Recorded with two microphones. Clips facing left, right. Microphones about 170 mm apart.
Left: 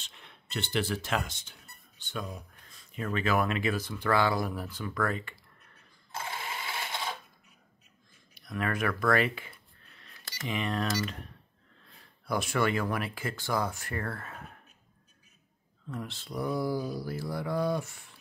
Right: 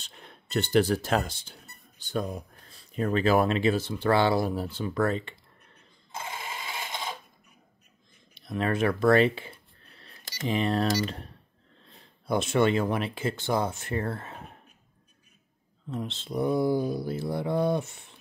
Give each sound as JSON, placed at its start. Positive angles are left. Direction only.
{"t": 0.0, "sound": "speech", "side_deg": -40}
{"t": 6.1, "sound": "sewing machine", "side_deg": -20}
{"t": 8.4, "sound": "a sound", "side_deg": -25}
{"t": 10.3, "sound": "speech", "side_deg": -35}
{"t": 15.9, "sound": "speech", "side_deg": -20}